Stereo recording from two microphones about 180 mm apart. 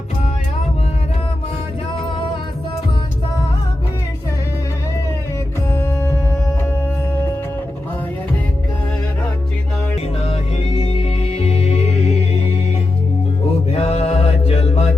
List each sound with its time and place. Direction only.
5.7 s music: 15° left (ahead or behind)
10.2 s music: 30° left (ahead or behind)
13.7 s mantra: 35° left (ahead or behind)